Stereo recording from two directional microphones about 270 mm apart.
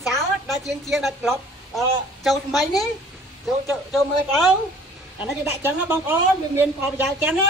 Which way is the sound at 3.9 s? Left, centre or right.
Centre.